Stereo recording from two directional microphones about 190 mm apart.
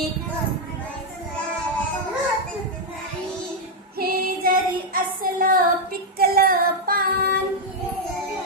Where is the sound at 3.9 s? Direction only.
50° right (ahead or behind).